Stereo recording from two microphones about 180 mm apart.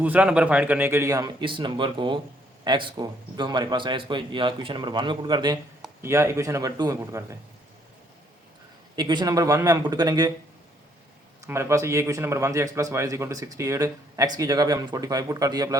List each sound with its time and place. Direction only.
0.0 s a man's voice: 10° right (ahead or behind)
9.0 s a man's voice: 25° right (ahead or behind)
11.4 s a man's voice: 15° right (ahead or behind)